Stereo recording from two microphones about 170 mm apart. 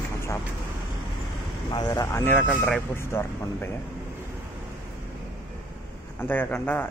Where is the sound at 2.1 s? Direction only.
15° left (ahead or behind).